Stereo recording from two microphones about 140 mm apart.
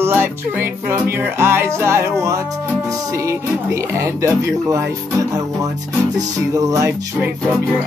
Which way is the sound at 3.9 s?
20° right (ahead or behind).